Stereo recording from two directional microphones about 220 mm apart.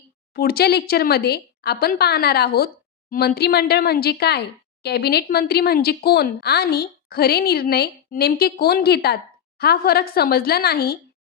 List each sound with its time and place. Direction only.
0.3 s speech: 45° left (ahead or behind)